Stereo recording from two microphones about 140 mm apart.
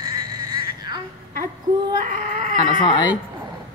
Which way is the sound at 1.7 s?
40° right (ahead or behind).